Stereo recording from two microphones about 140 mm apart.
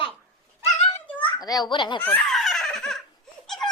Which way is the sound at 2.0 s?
10° left (ahead or behind).